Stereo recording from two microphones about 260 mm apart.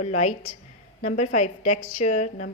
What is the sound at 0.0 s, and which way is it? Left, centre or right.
A woman's voice, left.